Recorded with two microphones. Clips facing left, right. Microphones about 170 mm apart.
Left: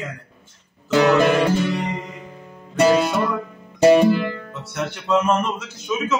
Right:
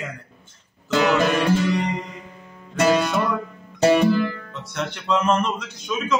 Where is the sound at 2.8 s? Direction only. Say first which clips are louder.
Left 3 dB; 30° left (ahead or behind).